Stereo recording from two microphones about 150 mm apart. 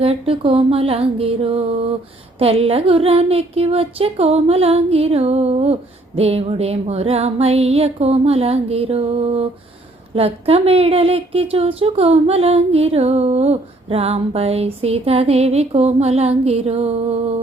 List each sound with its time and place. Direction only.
0.0 s speech: 40° right (ahead or behind)